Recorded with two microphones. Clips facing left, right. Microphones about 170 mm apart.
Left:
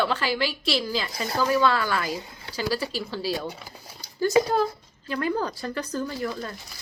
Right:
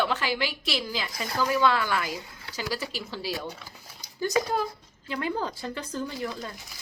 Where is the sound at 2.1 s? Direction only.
25° left (ahead or behind).